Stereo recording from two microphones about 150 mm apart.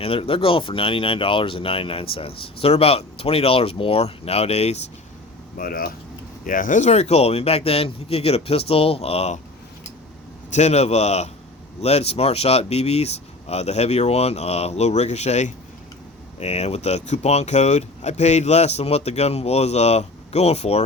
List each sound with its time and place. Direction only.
0.0 s speech: 40° left (ahead or behind)
5.5 s speech: 75° left (ahead or behind)
6.4 s speech: 65° left (ahead or behind); by 9.4 s 45° left (ahead or behind)
10.5 s speech: 50° left (ahead or behind)